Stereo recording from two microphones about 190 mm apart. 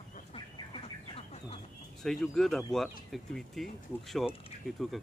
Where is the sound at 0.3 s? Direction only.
30° left (ahead or behind).